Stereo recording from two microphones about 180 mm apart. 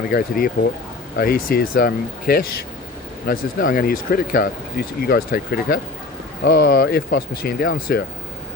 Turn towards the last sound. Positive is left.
turn(degrees=55)  # may be behind; listen again after turning